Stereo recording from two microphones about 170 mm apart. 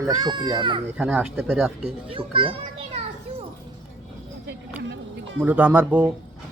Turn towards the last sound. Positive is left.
turn(degrees=-10)  # may be behind; listen again after turning